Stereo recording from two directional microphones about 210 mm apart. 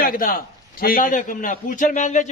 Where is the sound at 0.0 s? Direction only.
40° left (ahead or behind).